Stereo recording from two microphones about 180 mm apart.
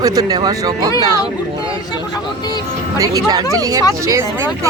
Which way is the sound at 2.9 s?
20° right (ahead or behind).